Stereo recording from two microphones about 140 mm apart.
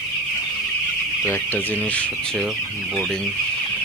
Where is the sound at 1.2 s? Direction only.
15° left (ahead or behind).